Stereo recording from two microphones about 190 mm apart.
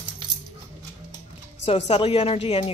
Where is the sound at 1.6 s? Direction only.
35° left (ahead or behind).